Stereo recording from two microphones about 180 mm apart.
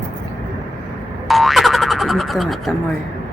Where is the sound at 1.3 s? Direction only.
Centre (ahead or behind).